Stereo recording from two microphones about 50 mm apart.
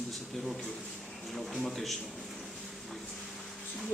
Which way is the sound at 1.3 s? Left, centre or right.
Centre.